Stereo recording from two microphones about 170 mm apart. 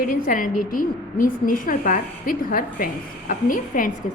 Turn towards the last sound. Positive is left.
turn(degrees=55)  # may be behind; listen again after turning